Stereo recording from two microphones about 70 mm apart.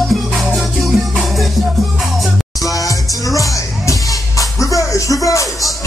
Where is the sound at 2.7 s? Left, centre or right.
Left.